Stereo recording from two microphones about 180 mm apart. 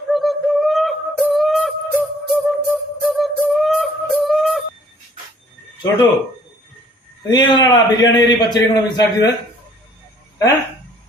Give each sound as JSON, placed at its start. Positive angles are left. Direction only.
{"t": 0.1, "sound": "music", "side_deg": 0}
{"t": 7.3, "sound": "a man's voice", "side_deg": 25}